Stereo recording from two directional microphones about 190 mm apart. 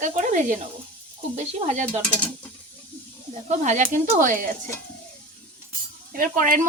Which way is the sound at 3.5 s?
40° right (ahead or behind).